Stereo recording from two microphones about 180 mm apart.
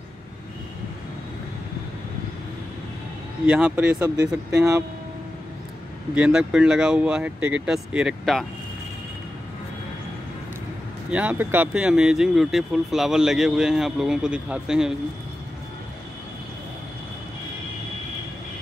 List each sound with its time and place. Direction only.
3.4 s speech: 10° right (ahead or behind)
6.1 s speech: 5° right (ahead or behind)
11.1 s speech: 10° right (ahead or behind)